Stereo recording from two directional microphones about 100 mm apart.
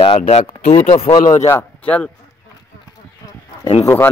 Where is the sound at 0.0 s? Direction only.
90° left; by 1.1 s 70° left (ahead or behind).